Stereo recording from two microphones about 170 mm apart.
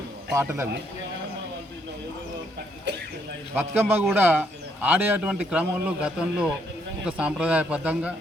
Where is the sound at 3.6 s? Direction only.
10° right (ahead or behind).